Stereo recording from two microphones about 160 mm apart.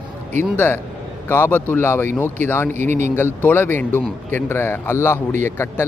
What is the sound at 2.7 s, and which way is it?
Speech, 50° right (ahead or behind).